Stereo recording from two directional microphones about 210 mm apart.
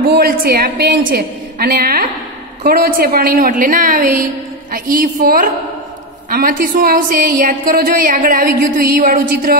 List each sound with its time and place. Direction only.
0.1 s a woman's voice: 45° right (ahead or behind)